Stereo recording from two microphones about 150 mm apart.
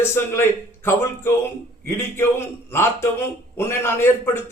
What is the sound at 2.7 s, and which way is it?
A man's voice, 15° left (ahead or behind).